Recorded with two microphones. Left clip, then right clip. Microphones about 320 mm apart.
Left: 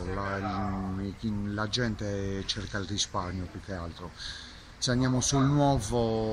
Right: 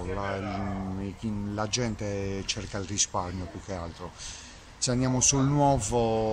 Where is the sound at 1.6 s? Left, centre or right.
Centre.